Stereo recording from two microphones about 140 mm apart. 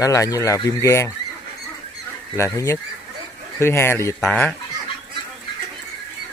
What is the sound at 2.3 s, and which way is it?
Speech, 20° left (ahead or behind).